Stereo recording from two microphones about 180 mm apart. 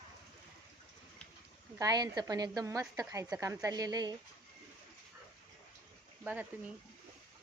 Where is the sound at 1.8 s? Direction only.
20° right (ahead or behind).